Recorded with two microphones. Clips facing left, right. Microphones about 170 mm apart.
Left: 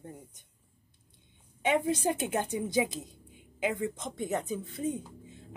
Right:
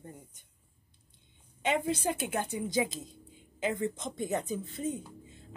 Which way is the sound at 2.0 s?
15° left (ahead or behind).